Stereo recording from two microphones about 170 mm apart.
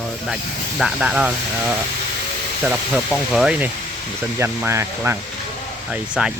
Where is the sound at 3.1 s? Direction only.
5° right (ahead or behind).